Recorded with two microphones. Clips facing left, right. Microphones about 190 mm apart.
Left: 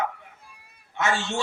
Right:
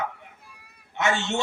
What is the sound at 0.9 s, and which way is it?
Speech, 20° right (ahead or behind).